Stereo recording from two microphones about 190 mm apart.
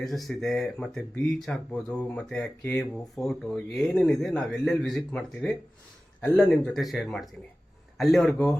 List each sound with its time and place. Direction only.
0.0 s speech: centre (ahead or behind)